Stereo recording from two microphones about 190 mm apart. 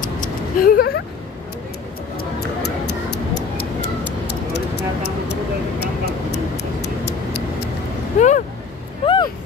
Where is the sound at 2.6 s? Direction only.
60° left (ahead or behind).